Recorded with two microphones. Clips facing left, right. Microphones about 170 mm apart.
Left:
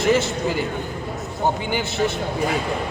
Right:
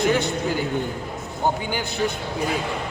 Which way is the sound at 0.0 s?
5° left (ahead or behind).